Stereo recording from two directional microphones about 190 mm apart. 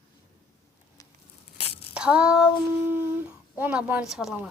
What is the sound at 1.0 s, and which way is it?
Tearing, 15° left (ahead or behind).